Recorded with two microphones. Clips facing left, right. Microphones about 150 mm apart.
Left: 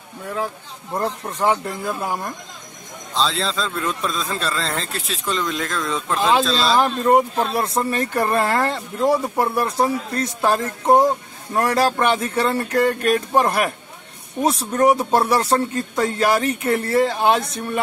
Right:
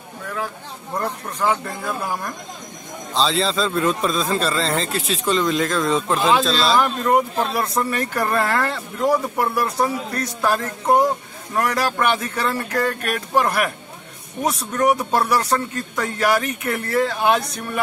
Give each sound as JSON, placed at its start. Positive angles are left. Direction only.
{"t": 0.9, "sound": "speech", "side_deg": 25}
{"t": 3.2, "sound": "a man's voice", "side_deg": 0}
{"t": 6.8, "sound": "speech", "side_deg": 30}